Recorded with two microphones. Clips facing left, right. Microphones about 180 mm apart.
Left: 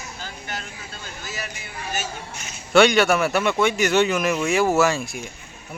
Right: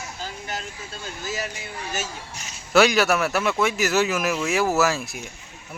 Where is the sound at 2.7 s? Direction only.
Centre (ahead or behind).